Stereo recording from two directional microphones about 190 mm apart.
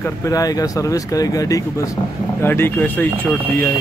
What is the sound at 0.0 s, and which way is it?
Speech, 15° left (ahead or behind).